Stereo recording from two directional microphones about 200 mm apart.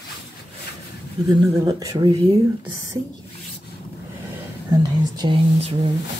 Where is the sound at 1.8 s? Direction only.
15° right (ahead or behind).